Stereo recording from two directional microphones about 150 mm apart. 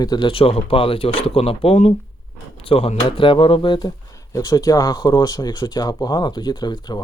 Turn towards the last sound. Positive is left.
turn(degrees=30)  # may be behind; listen again after turning